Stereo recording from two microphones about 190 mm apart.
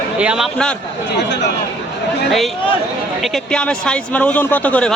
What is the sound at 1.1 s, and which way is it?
Speech, 65° left (ahead or behind).